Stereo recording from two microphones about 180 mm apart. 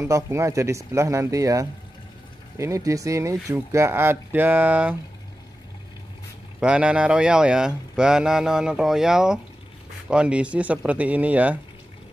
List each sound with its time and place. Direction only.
0.0 s speech: 15° right (ahead or behind)
6.6 s speech: 5° right (ahead or behind)